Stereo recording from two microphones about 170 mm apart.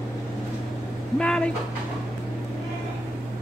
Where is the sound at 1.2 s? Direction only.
5° left (ahead or behind).